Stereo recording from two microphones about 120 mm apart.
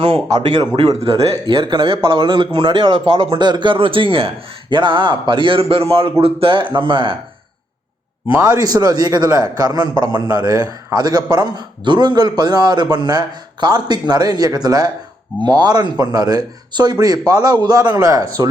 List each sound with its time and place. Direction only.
0.3 s a man's voice: 35° right (ahead or behind)
0.9 s a man's voice: 50° right (ahead or behind)
8.4 s a man's voice: 30° right (ahead or behind)